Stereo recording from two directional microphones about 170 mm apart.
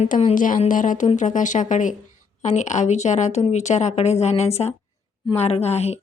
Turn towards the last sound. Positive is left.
turn(degrees=40)  # may be behind; listen again after turning